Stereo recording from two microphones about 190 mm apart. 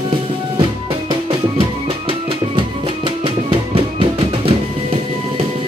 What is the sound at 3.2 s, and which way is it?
Music, 30° right (ahead or behind).